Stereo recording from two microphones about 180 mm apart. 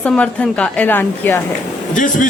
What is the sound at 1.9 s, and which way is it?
Speech, 45° left (ahead or behind).